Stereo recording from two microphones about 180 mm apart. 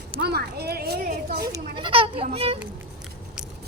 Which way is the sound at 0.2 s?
65° right (ahead or behind).